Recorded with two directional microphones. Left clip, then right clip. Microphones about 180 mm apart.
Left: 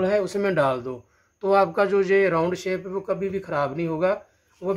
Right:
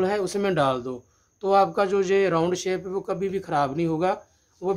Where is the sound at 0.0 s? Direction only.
30° right (ahead or behind).